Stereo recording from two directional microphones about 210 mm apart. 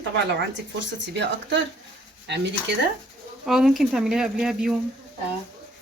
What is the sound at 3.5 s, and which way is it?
Speech, centre (ahead or behind).